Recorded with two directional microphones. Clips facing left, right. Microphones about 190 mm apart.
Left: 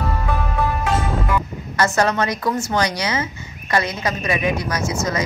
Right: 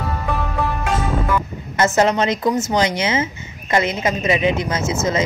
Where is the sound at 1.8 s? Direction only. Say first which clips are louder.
Right 2 dB; 20° right (ahead or behind).